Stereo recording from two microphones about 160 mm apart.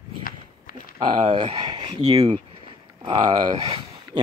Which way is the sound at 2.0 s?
25° right (ahead or behind).